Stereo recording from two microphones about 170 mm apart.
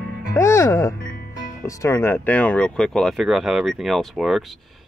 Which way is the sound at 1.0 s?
55° left (ahead or behind).